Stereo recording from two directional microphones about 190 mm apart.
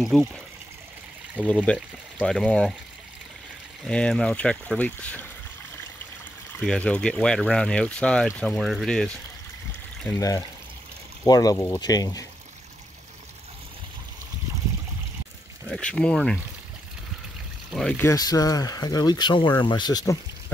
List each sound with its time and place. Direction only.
0.1 s speech: centre (ahead or behind)
1.7 s speech: 5° left (ahead or behind)
3.8 s speech: 5° left (ahead or behind)
6.6 s speech: 5° left (ahead or behind)
10.0 s speech: 15° left (ahead or behind)
15.7 s speech: 5° left (ahead or behind)
17.7 s speech: 5° left (ahead or behind)
18.0 s speech: 20° left (ahead or behind)